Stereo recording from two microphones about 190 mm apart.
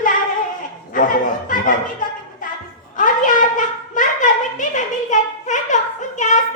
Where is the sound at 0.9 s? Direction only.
45° left (ahead or behind).